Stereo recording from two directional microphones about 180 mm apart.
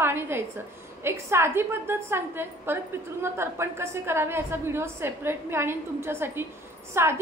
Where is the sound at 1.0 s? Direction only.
15° right (ahead or behind).